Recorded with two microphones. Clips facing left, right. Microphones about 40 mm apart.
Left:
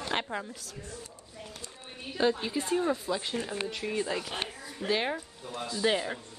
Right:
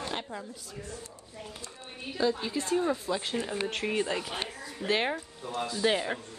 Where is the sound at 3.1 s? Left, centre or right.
Centre.